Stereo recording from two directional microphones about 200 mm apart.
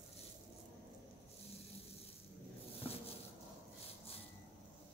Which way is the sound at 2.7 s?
30° left (ahead or behind).